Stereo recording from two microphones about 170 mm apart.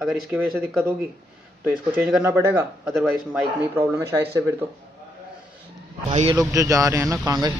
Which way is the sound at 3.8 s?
15° right (ahead or behind).